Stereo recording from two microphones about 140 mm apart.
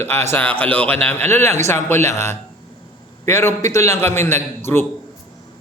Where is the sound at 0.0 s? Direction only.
15° left (ahead or behind).